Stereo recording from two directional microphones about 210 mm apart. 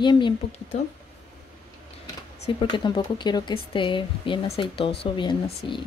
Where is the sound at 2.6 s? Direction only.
20° left (ahead or behind).